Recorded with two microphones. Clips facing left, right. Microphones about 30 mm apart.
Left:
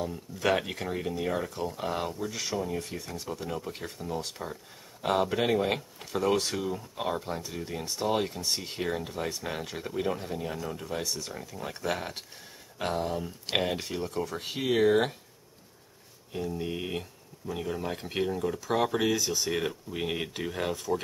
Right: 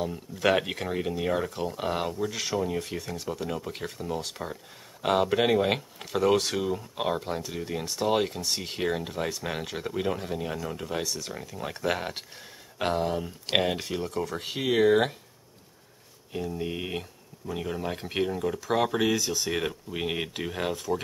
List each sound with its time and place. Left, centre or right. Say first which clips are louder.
0.0 s speech: right 3 dB; centre
3.1 s speech: right 3 dB; centre
8.4 s speech: right 1 dB; centre
8.6 s speech: right 3 dB; centre
16.3 s speech: right 1 dB; centre